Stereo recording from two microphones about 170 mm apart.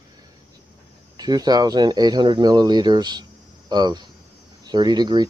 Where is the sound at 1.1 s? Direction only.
25° right (ahead or behind).